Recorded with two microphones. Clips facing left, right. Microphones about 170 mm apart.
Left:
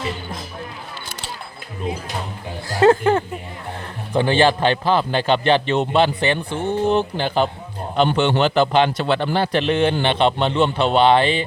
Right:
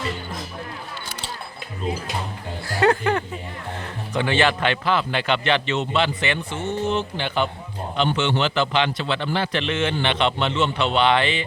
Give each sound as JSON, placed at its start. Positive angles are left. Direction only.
{"t": 2.6, "sound": "a sound", "side_deg": 25}
{"t": 4.1, "sound": "a man's voice", "side_deg": 35}
{"t": 5.7, "sound": "speech", "side_deg": 55}
{"t": 6.1, "sound": "a man's voice", "side_deg": 35}